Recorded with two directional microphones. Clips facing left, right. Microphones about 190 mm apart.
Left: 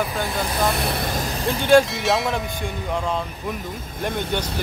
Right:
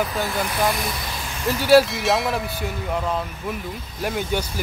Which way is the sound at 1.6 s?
5° right (ahead or behind).